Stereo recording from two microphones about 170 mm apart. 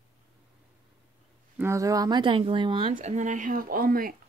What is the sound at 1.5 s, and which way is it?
Speech, 15° right (ahead or behind).